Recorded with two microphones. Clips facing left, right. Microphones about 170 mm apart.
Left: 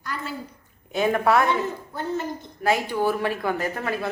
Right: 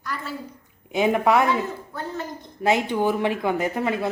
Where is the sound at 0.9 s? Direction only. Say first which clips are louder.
Right 1 dB; 15° right (ahead or behind).